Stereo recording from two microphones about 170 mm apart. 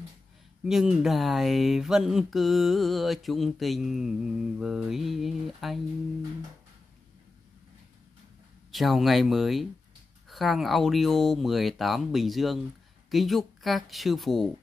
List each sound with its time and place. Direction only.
0.7 s speech: centre (ahead or behind)
8.7 s speech: centre (ahead or behind)